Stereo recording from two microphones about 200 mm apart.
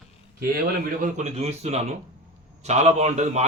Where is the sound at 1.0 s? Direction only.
35° right (ahead or behind).